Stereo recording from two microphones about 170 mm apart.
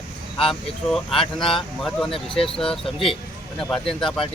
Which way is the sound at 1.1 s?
30° left (ahead or behind).